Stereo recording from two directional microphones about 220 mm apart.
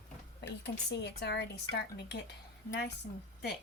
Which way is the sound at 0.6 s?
50° left (ahead or behind).